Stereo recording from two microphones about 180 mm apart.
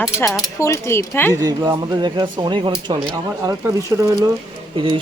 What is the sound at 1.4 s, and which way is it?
Speech, 20° right (ahead or behind).